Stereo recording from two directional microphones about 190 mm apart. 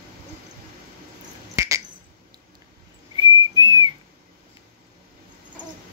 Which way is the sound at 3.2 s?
20° right (ahead or behind).